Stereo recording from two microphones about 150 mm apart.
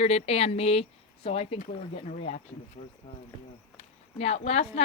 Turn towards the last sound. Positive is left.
turn(degrees=45)  # may be behind; listen again after turning